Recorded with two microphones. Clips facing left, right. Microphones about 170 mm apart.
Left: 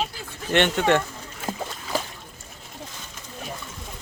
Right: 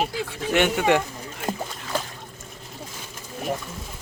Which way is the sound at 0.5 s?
10° right (ahead or behind).